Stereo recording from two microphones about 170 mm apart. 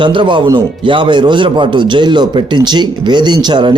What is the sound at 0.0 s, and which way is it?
Speech, 30° right (ahead or behind).